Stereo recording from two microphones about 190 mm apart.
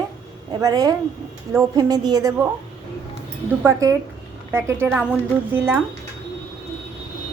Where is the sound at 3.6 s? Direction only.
15° right (ahead or behind).